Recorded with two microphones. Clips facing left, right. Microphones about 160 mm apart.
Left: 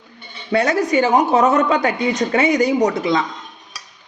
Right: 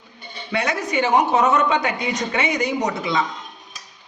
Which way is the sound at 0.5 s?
40° left (ahead or behind).